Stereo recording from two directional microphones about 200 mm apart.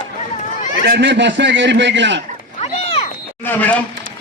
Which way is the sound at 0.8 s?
55° right (ahead or behind).